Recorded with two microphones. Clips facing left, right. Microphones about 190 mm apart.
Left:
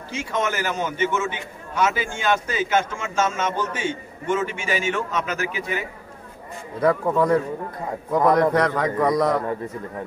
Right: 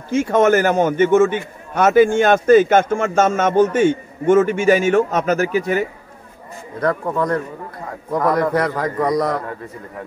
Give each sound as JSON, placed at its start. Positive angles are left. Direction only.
{"t": 0.1, "sound": "a man's voice", "side_deg": -55}
{"t": 6.8, "sound": "a man's voice", "side_deg": 5}